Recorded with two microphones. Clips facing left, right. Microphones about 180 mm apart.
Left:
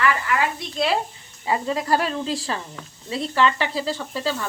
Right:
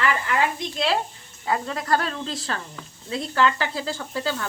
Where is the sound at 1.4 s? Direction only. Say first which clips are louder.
Left 3 dB; 10° left (ahead or behind).